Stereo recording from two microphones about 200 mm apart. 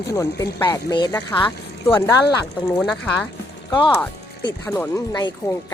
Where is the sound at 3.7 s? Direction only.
25° left (ahead or behind).